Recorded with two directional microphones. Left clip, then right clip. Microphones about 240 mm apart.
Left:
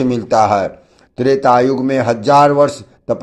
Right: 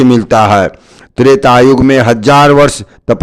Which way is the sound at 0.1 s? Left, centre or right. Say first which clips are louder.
Right 5 dB; right.